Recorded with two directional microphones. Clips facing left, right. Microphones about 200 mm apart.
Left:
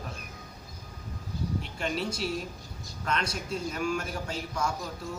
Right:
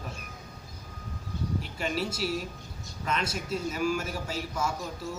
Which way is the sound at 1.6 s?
5° right (ahead or behind).